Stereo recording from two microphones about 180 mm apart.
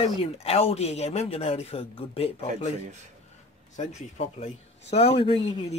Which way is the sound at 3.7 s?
40° left (ahead or behind).